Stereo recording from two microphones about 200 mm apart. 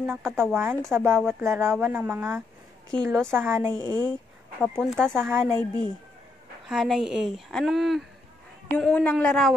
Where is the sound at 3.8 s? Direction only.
20° left (ahead or behind).